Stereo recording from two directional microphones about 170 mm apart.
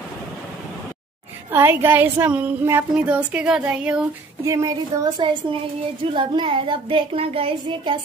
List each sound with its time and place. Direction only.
1.5 s speech: 15° right (ahead or behind)
4.5 s speech: 20° right (ahead or behind)